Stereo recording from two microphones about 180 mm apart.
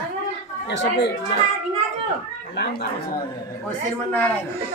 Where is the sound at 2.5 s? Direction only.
65° left (ahead or behind).